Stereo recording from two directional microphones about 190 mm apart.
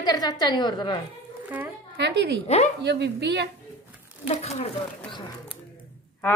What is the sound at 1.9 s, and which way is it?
A woman's voice, 65° right (ahead or behind).